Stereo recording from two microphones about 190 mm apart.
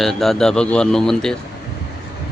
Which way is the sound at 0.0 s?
Centre (ahead or behind).